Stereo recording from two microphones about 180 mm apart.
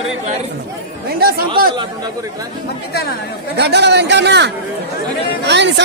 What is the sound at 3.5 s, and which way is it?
A man's voice, 70° right (ahead or behind).